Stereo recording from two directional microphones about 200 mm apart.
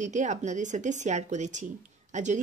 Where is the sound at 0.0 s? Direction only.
35° right (ahead or behind).